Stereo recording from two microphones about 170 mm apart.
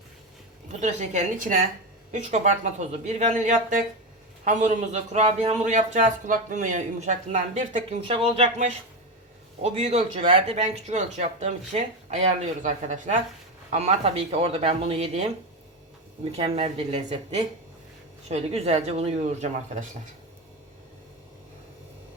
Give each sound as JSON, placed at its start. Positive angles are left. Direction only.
{"t": 0.8, "sound": "a man's voice", "side_deg": -45}
{"t": 16.3, "sound": "speech", "side_deg": -40}